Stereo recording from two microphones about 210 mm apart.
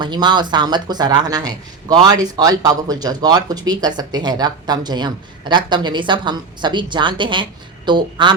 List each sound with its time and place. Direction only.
0.0 s speech: 20° right (ahead or behind)